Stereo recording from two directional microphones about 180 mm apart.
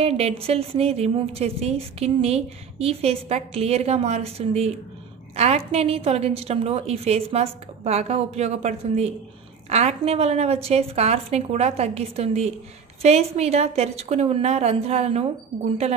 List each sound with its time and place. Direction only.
0.0 s a woman's voice: 35° right (ahead or behind)